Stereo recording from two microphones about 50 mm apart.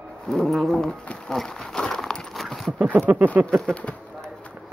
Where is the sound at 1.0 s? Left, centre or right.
Centre.